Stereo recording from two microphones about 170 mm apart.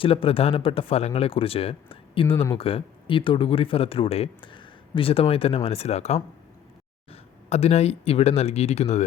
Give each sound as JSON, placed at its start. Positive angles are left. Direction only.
{"t": 0.0, "sound": "speech", "side_deg": 30}